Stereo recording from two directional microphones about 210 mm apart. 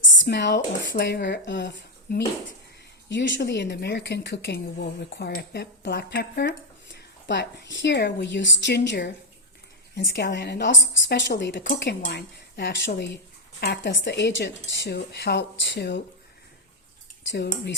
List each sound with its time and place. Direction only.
0.2 s a woman's voice: 55° left (ahead or behind)